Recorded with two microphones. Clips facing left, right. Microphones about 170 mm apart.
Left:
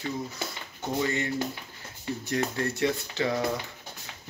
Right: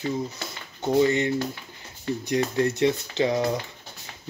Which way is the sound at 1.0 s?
20° right (ahead or behind).